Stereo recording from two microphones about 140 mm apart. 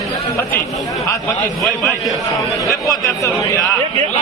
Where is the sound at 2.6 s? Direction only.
25° left (ahead or behind).